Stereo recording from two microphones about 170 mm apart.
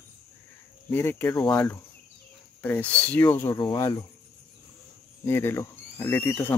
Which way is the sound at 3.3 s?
25° left (ahead or behind).